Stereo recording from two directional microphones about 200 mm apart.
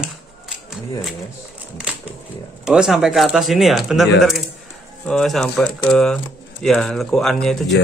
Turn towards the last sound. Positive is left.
turn(degrees=0)  # may be behind; listen again after turning